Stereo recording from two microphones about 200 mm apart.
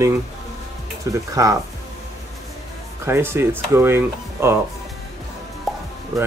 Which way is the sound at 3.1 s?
10° right (ahead or behind).